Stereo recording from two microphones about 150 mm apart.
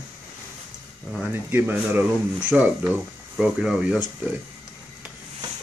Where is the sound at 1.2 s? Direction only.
10° right (ahead or behind).